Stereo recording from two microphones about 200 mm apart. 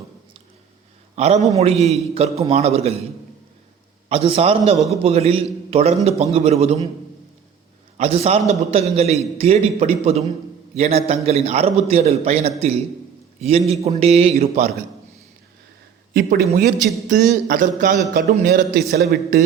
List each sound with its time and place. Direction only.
1.1 s a man's voice: 35° right (ahead or behind)
4.1 s a man's voice: 30° right (ahead or behind)
7.9 s a man's voice: 30° right (ahead or behind)
16.1 s a man's voice: 50° right (ahead or behind)